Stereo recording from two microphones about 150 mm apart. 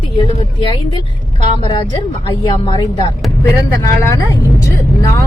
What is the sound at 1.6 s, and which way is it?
Speech, 35° left (ahead or behind).